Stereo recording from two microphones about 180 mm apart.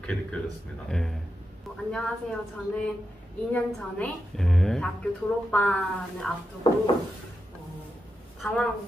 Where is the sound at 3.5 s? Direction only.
5° left (ahead or behind).